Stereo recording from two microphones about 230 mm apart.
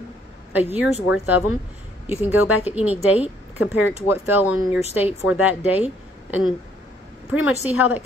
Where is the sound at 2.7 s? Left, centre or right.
Centre.